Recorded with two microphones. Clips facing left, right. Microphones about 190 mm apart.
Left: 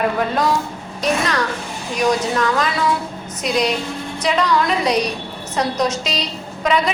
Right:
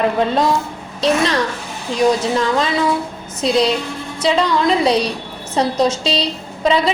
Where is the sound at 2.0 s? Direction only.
25° right (ahead or behind).